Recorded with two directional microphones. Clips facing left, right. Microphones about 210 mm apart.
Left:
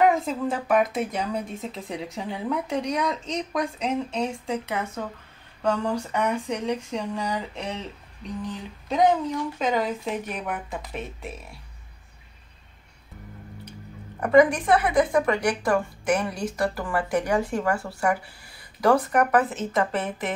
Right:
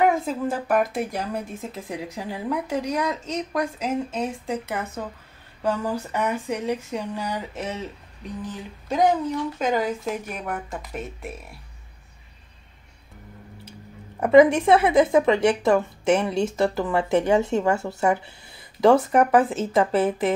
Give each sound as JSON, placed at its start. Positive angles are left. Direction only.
{"t": 0.0, "sound": "speech", "side_deg": 0}
{"t": 14.2, "sound": "speech", "side_deg": -25}